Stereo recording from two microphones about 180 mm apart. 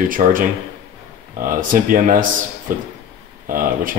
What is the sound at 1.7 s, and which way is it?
Speech, 50° right (ahead or behind).